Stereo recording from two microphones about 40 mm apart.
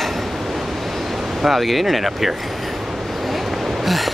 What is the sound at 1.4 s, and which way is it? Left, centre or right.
Speech, centre.